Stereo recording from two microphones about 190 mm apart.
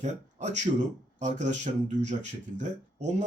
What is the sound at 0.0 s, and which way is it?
Speech, 35° right (ahead or behind).